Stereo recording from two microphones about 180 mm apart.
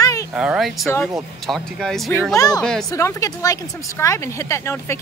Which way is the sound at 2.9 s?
15° left (ahead or behind).